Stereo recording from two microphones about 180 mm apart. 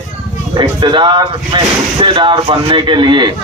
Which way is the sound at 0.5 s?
25° right (ahead or behind).